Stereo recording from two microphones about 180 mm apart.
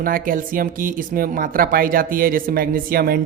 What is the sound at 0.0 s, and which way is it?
Speech, 50° right (ahead or behind).